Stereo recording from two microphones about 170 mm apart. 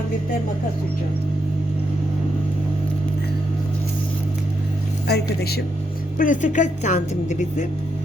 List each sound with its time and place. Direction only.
5.0 s a woman's voice: 70° left (ahead or behind)
6.1 s a woman's voice: 50° left (ahead or behind)